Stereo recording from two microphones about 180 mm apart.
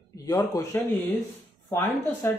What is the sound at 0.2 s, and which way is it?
Speech, 20° left (ahead or behind).